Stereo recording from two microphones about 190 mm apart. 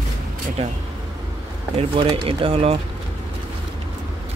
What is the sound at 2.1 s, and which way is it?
Speech, 30° right (ahead or behind).